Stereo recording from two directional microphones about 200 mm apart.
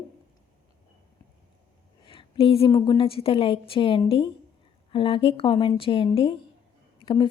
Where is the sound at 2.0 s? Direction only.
25° left (ahead or behind).